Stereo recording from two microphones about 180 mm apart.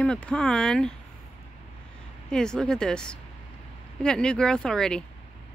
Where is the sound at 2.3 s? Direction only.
5° left (ahead or behind).